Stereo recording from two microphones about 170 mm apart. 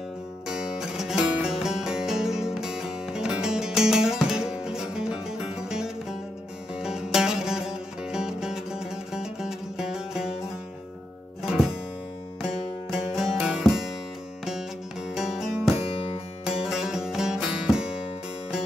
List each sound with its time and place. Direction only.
0.5 s music: 5° right (ahead or behind)
12.9 s music: centre (ahead or behind)
15.1 s music: centre (ahead or behind)